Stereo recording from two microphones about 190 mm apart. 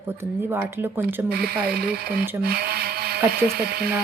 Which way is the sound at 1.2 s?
55° right (ahead or behind).